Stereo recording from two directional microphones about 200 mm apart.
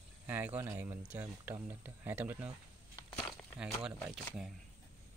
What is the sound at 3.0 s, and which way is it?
Walk, 10° left (ahead or behind).